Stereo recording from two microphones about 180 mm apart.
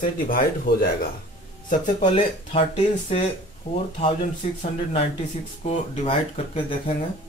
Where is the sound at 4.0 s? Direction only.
35° left (ahead or behind).